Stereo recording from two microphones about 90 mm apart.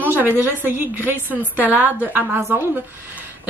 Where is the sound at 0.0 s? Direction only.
20° right (ahead or behind).